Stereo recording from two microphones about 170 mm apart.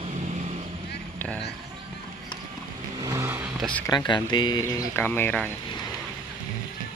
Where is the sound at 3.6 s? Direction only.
10° left (ahead or behind).